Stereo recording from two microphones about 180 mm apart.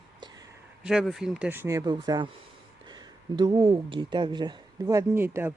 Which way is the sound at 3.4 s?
25° right (ahead or behind).